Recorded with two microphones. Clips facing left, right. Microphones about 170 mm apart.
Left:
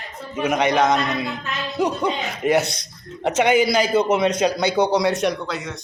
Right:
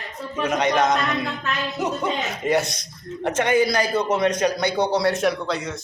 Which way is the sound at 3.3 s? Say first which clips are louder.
Left 2 dB; 80° left.